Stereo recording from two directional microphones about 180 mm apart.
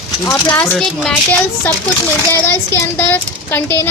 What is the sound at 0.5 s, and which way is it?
Speech, 10° left (ahead or behind).